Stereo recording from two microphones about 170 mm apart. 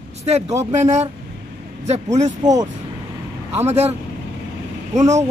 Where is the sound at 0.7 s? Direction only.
40° right (ahead or behind).